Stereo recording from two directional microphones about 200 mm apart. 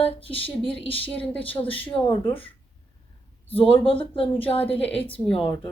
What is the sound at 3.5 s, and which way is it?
A woman's voice, 25° left (ahead or behind).